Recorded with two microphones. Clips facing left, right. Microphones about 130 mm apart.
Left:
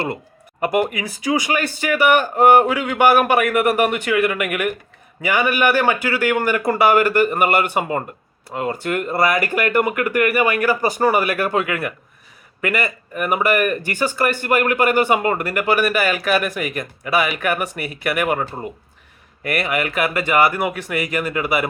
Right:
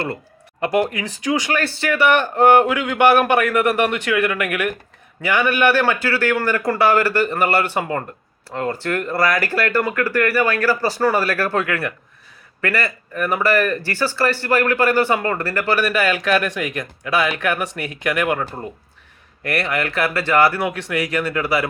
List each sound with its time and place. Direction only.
0.6 s speech: 10° left (ahead or behind)